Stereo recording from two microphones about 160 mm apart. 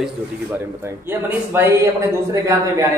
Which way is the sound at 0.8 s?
15° right (ahead or behind).